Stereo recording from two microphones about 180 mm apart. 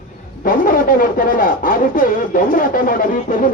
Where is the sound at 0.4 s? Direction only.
50° left (ahead or behind).